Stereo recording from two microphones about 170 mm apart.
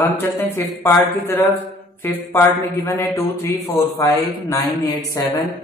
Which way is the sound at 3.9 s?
20° left (ahead or behind).